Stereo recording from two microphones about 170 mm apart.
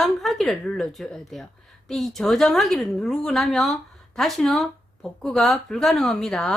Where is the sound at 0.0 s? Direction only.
Centre (ahead or behind).